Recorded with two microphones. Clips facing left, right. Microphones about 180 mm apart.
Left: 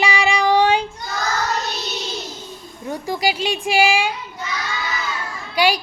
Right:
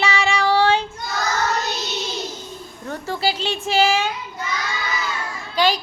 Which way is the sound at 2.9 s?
15° left (ahead or behind).